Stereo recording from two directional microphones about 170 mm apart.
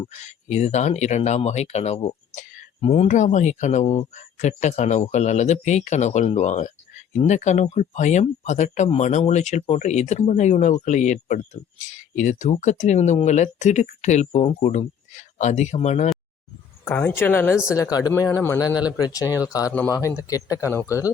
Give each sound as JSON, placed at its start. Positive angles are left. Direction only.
{"t": 0.1, "sound": "speech", "side_deg": 45}
{"t": 16.8, "sound": "speech", "side_deg": 15}
{"t": 17.7, "sound": "speech", "side_deg": 20}